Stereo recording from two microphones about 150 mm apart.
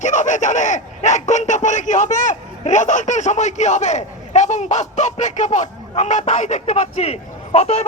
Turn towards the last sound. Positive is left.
turn(degrees=45)  # may be behind; listen again after turning